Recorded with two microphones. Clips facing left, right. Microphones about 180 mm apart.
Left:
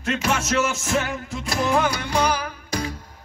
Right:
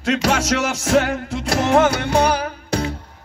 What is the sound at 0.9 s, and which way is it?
Music, 75° right (ahead or behind).